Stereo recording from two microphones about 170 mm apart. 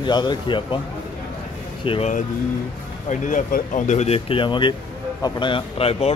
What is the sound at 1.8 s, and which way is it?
Speech, 30° left (ahead or behind).